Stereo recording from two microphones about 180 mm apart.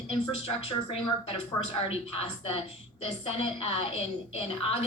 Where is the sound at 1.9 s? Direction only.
35° left (ahead or behind).